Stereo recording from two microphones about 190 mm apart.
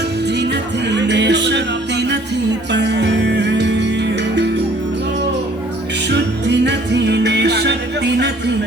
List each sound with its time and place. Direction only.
0.3 s music: 65° right (ahead or behind)
6.1 s music: 65° right (ahead or behind)